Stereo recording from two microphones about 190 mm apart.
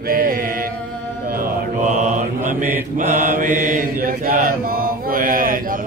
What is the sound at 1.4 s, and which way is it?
Mantra, 40° right (ahead or behind).